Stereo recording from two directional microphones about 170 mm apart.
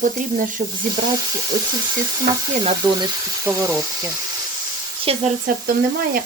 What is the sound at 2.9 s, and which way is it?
Speech, 20° right (ahead or behind).